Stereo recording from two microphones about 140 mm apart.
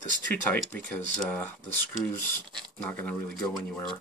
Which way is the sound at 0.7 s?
10° left (ahead or behind).